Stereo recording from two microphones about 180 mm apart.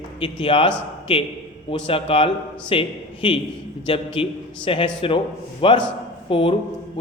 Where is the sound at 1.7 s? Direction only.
30° left (ahead or behind).